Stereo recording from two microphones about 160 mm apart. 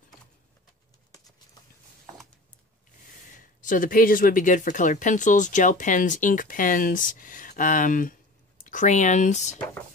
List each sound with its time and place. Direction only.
3.3 s speech: 55° left (ahead or behind)